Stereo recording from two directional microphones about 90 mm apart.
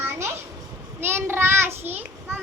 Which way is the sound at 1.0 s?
25° right (ahead or behind).